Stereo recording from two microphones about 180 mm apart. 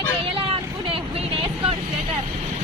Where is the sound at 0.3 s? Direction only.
30° right (ahead or behind).